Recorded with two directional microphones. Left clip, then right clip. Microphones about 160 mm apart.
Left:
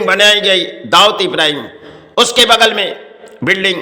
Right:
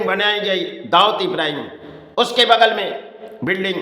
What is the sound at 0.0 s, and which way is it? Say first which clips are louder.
A man's voice: left 9 dB; 20° left (ahead or behind).